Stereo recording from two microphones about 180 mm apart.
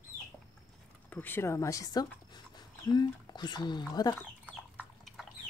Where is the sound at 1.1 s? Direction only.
10° left (ahead or behind).